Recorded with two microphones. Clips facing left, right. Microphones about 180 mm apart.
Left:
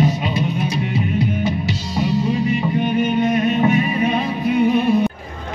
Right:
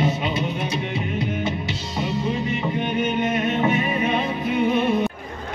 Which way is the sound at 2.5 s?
20° right (ahead or behind).